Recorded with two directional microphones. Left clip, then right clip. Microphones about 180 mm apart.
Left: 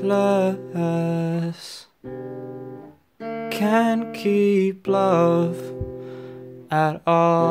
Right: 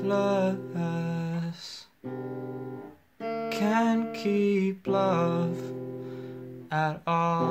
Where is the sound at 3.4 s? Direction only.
50° left (ahead or behind).